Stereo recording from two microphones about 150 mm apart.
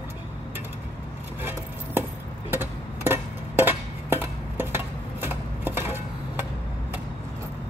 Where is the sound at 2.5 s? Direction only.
15° right (ahead or behind).